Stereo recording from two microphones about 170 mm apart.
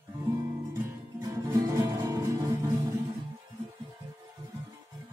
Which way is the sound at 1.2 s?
20° right (ahead or behind).